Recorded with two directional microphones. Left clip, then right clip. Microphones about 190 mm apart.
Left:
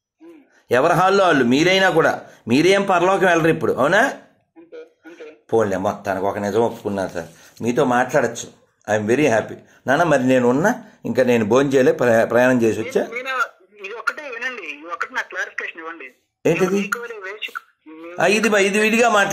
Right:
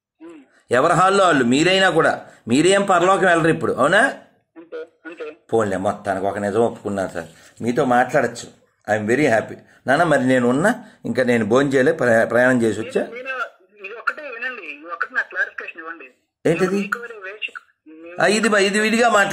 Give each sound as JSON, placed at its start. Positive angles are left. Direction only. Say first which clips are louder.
{"t": 0.7, "sound": "a man's voice", "louder": "even", "side_deg": -5}
{"t": 4.6, "sound": "a sound", "louder": "right 6 dB", "side_deg": -30}
{"t": 5.5, "sound": "a man's voice", "louder": "left 1 dB", "side_deg": -10}
{"t": 14.8, "sound": "radio", "louder": "right 4 dB", "side_deg": 10}
{"t": 16.4, "sound": "a man's voice", "louder": "left 1 dB", "side_deg": 0}
{"t": 16.7, "sound": "a sound", "louder": "left 1 dB", "side_deg": 10}
{"t": 18.1, "sound": "a man's voice", "louder": "even", "side_deg": -5}